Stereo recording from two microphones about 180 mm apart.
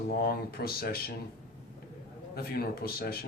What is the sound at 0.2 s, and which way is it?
Speech, 60° left (ahead or behind).